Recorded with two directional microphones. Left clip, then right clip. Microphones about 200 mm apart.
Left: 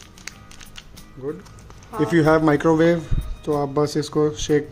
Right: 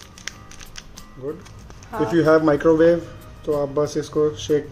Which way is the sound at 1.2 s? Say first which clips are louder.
Even; 55° left (ahead or behind).